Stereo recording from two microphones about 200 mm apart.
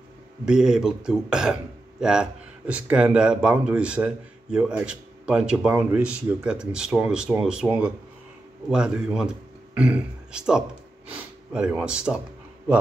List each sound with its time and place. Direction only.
0.5 s speech: 5° right (ahead or behind)